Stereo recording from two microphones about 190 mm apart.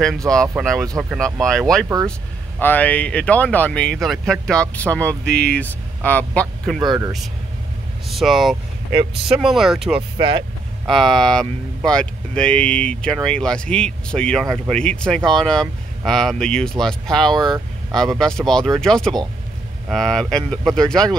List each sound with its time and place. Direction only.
0.3 s speech: 5° left (ahead or behind)
2.6 s speech: 10° left (ahead or behind)
6.8 s speech: 20° right (ahead or behind)
8.1 s speech: centre (ahead or behind)
10.1 s speech: 25° right (ahead or behind)
10.9 s speech: centre (ahead or behind)